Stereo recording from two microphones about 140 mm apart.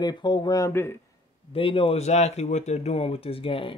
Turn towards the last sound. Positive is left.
turn(degrees=40)  # may be behind; listen again after turning